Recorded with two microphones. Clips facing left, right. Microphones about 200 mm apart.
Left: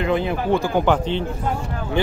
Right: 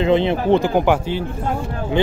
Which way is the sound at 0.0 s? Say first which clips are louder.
Right 5 dB; 25° right (ahead or behind).